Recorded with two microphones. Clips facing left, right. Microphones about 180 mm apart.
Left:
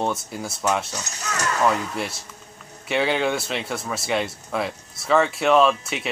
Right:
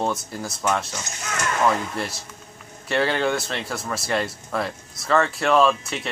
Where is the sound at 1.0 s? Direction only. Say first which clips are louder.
Left 1 dB; 35° left (ahead or behind).